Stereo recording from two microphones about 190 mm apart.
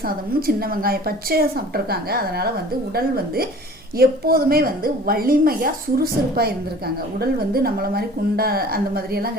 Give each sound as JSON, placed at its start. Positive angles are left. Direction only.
{"t": 0.3, "sound": "a woman's voice", "side_deg": -50}
{"t": 3.9, "sound": "a woman's voice", "side_deg": -50}